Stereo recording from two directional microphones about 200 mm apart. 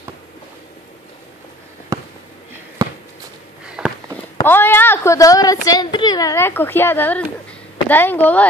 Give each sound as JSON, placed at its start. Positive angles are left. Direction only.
{"t": 1.9, "sound": "fireworks", "side_deg": -15}
{"t": 2.8, "sound": "a sound", "side_deg": -20}
{"t": 3.6, "sound": "walk", "side_deg": -5}
{"t": 4.4, "sound": "a woman's voice", "side_deg": 10}